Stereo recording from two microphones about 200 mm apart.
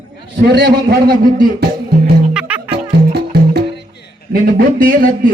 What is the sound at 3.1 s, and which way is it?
Music, 55° right (ahead or behind).